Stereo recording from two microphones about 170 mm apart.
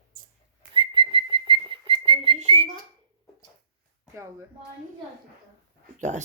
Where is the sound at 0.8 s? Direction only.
30° right (ahead or behind).